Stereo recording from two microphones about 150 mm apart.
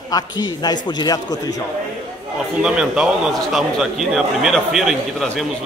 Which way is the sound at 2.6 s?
5° right (ahead or behind).